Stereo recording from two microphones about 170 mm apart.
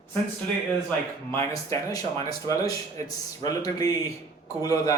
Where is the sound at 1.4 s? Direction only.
20° left (ahead or behind).